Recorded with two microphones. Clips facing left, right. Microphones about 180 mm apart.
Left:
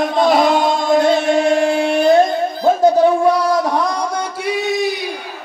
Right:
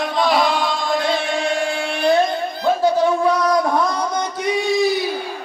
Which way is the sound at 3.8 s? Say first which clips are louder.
Left 1 dB; 10° left (ahead or behind).